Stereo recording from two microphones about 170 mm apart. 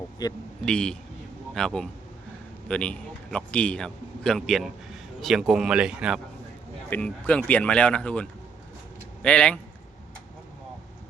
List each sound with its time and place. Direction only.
0.2 s a man's voice: 25° left (ahead or behind)
0.6 s a man's voice: 5° left (ahead or behind)
6.9 s speech: 5° left (ahead or behind)